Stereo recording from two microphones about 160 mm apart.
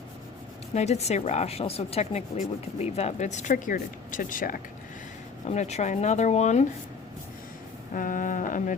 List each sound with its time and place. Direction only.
0.7 s speech: 45° left (ahead or behind); by 4.6 s 60° left (ahead or behind)
5.5 s speech: 45° left (ahead or behind)
7.9 s speech: 55° left (ahead or behind)